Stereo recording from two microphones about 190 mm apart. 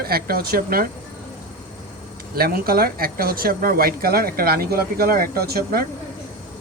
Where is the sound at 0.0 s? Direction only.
55° right (ahead or behind).